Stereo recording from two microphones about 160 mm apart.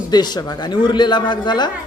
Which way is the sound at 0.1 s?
25° left (ahead or behind).